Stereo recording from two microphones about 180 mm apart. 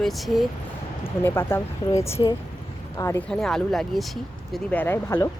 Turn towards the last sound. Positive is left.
turn(degrees=15)  # may be behind; listen again after turning